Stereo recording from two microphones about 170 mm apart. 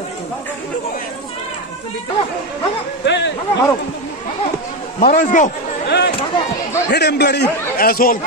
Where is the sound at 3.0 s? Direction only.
90° left.